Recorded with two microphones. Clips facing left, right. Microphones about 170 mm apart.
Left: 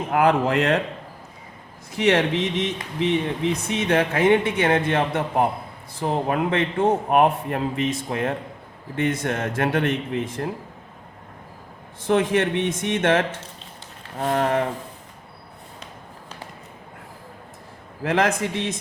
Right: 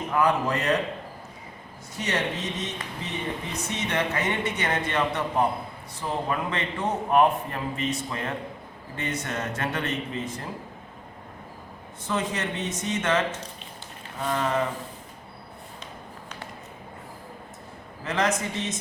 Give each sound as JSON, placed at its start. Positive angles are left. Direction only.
{"t": 0.1, "sound": "speech", "side_deg": 60}
{"t": 2.0, "sound": "speech", "side_deg": 90}
{"t": 12.0, "sound": "speech", "side_deg": 60}
{"t": 18.0, "sound": "speech", "side_deg": 60}